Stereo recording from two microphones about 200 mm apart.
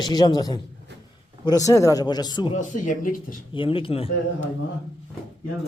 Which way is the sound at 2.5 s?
40° left (ahead or behind).